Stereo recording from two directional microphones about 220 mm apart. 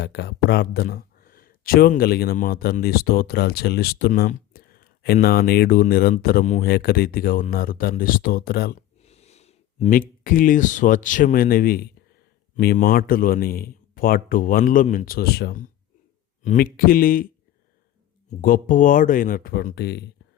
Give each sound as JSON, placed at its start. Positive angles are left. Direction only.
{"t": 0.0, "sound": "a man's voice", "side_deg": 50}
{"t": 9.0, "sound": "a man's voice", "side_deg": 30}
{"t": 18.4, "sound": "a man's voice", "side_deg": 40}